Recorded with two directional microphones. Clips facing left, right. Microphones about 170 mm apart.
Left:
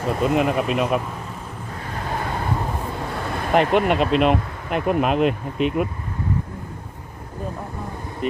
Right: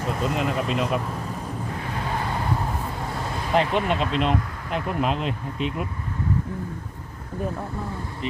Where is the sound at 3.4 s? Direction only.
60° left (ahead or behind).